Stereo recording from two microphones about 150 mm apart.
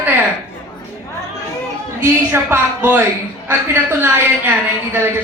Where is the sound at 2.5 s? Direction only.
15° right (ahead or behind).